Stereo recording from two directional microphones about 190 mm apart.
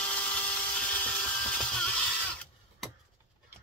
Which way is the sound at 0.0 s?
5° left (ahead or behind).